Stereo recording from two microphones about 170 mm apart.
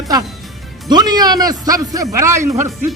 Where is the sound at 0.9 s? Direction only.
25° right (ahead or behind).